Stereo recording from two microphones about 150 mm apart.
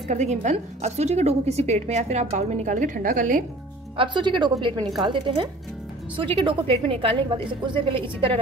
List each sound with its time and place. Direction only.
0.1 s a woman's voice: 50° right (ahead or behind)
3.9 s a woman's voice: 35° right (ahead or behind)